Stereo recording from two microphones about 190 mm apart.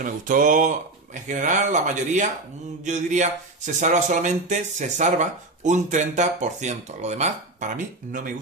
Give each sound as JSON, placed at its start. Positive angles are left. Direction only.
{"t": 0.0, "sound": "speech", "side_deg": -45}